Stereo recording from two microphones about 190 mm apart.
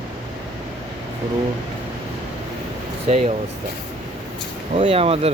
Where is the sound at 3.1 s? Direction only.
35° right (ahead or behind).